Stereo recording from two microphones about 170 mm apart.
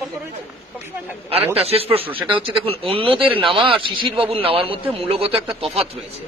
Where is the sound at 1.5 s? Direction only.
35° right (ahead or behind).